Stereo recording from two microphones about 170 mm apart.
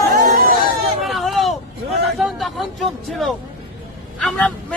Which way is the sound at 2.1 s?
Centre (ahead or behind).